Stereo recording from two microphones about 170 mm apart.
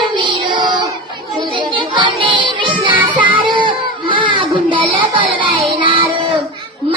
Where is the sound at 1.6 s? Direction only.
30° right (ahead or behind).